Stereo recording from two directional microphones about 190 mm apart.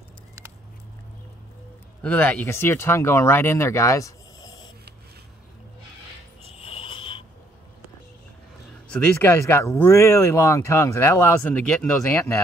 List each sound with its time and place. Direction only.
2.0 s speech: 5° left (ahead or behind)
6.6 s a sound: 30° left (ahead or behind)
8.8 s speech: 5° left (ahead or behind)